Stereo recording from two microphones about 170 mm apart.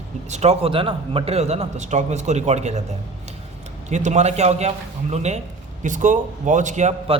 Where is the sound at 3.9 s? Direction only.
45° right (ahead or behind).